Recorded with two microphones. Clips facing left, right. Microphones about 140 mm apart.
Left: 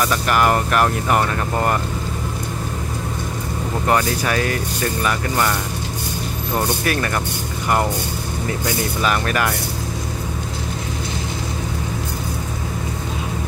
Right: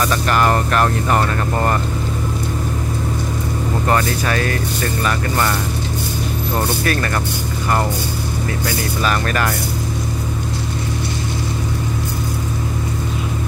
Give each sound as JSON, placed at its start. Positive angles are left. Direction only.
{"t": 0.0, "sound": "speech", "side_deg": 10}
{"t": 3.8, "sound": "speech", "side_deg": 15}
{"t": 6.5, "sound": "speech", "side_deg": 10}
{"t": 8.6, "sound": "speech", "side_deg": 15}